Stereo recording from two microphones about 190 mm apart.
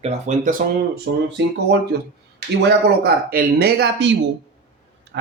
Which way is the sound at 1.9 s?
60° right (ahead or behind).